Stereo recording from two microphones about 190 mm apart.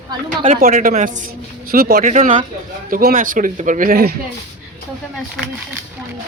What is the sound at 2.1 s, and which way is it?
A man's voice, 40° right (ahead or behind).